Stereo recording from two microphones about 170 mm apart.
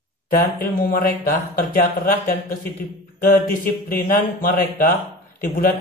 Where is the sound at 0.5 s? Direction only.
60° left (ahead or behind).